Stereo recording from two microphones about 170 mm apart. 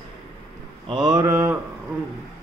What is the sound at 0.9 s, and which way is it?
Mantra, 25° right (ahead or behind).